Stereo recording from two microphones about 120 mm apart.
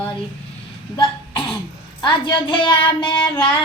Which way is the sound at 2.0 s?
40° left (ahead or behind).